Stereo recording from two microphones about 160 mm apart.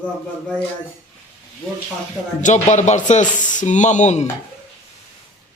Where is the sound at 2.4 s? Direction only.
45° left (ahead or behind).